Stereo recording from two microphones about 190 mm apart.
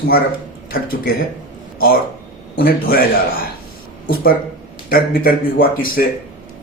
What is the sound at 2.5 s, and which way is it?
Speech, 50° left (ahead or behind).